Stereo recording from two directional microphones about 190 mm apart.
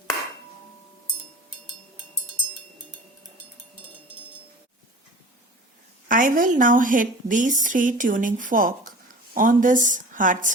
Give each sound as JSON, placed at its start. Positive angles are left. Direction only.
{"t": 6.1, "sound": "a woman's voice", "side_deg": -45}